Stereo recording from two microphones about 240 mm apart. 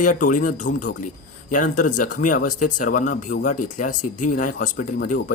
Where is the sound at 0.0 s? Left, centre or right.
Left.